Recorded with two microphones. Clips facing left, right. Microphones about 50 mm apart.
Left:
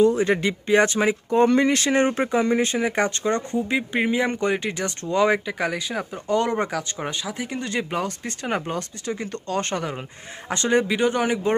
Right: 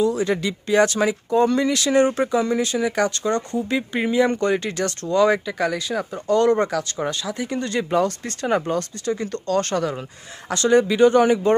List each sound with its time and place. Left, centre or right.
0.0 s speech: left
3.5 s speech: centre